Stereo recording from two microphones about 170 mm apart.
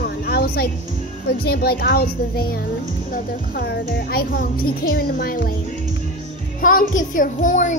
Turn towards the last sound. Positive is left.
turn(degrees=50)  # may be behind; listen again after turning